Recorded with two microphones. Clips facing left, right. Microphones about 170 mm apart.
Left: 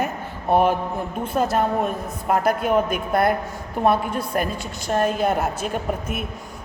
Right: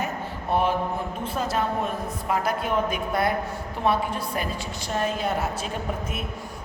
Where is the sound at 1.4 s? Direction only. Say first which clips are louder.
Left 6 dB; 50° left (ahead or behind).